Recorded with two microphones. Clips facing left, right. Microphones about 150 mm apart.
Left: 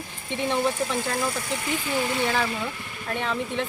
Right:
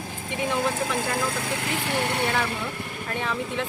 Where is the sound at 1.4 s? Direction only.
70° right (ahead or behind).